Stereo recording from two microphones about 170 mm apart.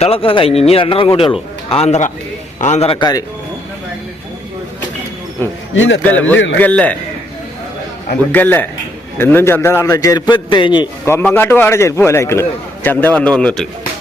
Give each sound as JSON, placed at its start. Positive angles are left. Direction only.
{"t": 0.0, "sound": "a man's voice", "side_deg": 35}
{"t": 3.0, "sound": "a man's voice", "side_deg": 20}
{"t": 5.7, "sound": "a man's voice", "side_deg": 90}
{"t": 6.0, "sound": "a man's voice", "side_deg": 10}
{"t": 8.3, "sound": "a man's voice", "side_deg": 10}
{"t": 11.0, "sound": "a man's voice", "side_deg": 10}